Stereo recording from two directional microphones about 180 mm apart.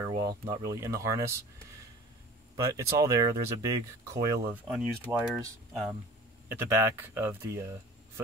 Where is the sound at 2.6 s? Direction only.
20° right (ahead or behind).